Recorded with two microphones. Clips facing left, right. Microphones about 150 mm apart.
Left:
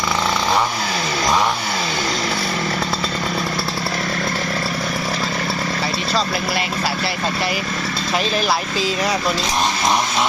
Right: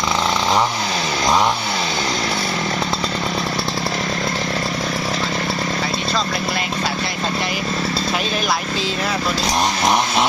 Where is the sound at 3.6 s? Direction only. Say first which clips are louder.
Right 1 dB; 5° left (ahead or behind).